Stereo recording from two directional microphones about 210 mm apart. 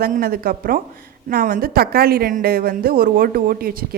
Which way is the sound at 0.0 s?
45° right (ahead or behind).